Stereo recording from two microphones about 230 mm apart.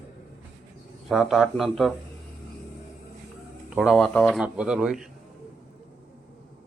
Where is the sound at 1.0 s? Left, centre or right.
Centre.